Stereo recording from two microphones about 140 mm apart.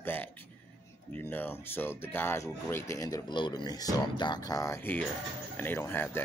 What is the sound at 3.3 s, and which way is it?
Speech, 35° left (ahead or behind).